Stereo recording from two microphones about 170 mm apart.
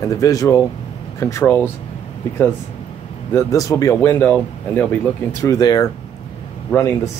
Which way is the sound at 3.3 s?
20° left (ahead or behind).